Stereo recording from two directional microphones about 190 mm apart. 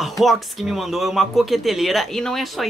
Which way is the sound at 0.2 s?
Centre (ahead or behind).